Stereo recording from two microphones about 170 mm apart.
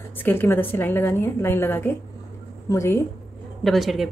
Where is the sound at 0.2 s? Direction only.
10° left (ahead or behind).